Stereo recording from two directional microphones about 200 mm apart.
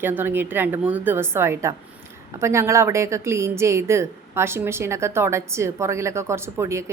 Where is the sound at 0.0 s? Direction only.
10° right (ahead or behind).